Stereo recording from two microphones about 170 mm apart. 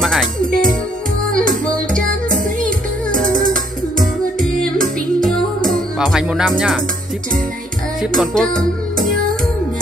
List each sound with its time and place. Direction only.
0.0 s music: centre (ahead or behind)
2.0 s music: 50° right (ahead or behind)
5.7 s music: centre (ahead or behind)
8.2 s music: 5° left (ahead or behind)
8.9 s music: 55° right (ahead or behind)